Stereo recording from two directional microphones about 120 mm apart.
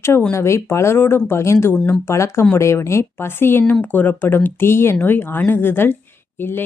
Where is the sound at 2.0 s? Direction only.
25° left (ahead or behind).